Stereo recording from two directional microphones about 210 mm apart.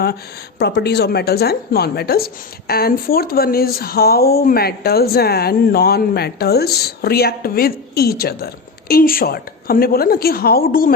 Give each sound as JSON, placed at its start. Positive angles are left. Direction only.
{"t": 0.6, "sound": "a woman's voice", "side_deg": 50}